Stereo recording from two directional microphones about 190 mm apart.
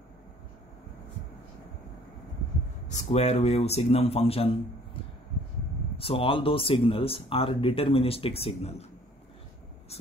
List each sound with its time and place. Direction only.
2.9 s speech: 35° left (ahead or behind)
5.9 s speech: 30° left (ahead or behind)